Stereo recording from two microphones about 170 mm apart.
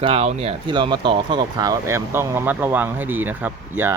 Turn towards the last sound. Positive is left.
turn(degrees=-15)  # may be behind; listen again after turning